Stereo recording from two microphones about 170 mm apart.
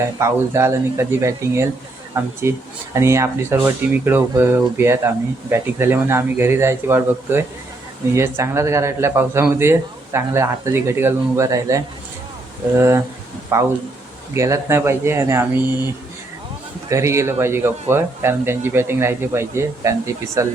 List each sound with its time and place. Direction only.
0.0 s a man's voice: 15° right (ahead or behind)
13.5 s a man's voice: 15° right (ahead or behind)
16.9 s a man's voice: 15° right (ahead or behind)